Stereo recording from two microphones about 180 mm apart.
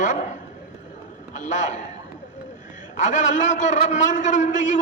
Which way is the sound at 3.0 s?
45° left (ahead or behind).